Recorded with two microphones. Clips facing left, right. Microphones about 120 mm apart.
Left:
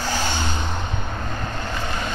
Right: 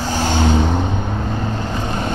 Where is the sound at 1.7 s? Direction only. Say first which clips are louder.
Right 4 dB; 35° right (ahead or behind).